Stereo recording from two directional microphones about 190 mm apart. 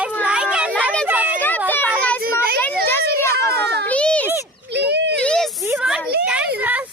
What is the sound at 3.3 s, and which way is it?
Children playing, 60° right (ahead or behind).